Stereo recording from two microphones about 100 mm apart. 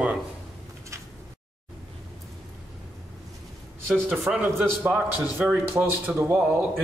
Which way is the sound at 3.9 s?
5° right (ahead or behind).